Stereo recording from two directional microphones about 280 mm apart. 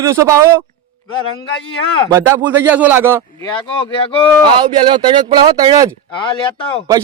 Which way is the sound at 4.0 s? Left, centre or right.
Centre.